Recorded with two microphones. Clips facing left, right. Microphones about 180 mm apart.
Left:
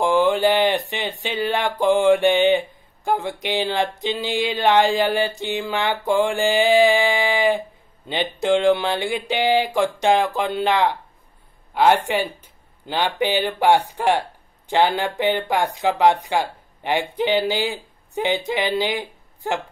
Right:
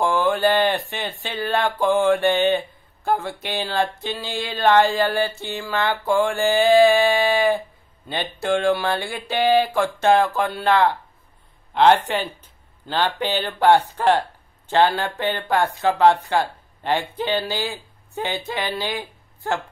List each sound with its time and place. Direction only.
0.0 s speech: 15° left (ahead or behind)